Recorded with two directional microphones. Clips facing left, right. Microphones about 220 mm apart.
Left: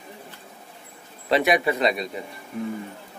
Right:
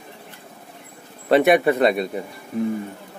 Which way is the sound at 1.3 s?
55° right (ahead or behind).